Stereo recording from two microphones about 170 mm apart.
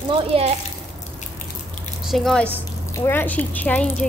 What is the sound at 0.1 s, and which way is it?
Speech, 35° right (ahead or behind).